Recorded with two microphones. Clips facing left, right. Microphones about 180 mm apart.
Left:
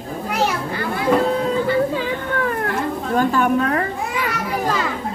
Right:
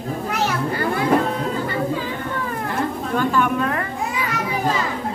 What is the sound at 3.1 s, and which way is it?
Speech, 45° left (ahead or behind).